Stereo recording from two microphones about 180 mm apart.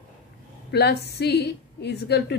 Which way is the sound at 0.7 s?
65° left (ahead or behind).